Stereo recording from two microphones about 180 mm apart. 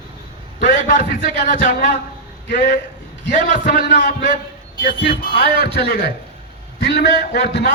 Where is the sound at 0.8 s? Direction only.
60° left (ahead or behind).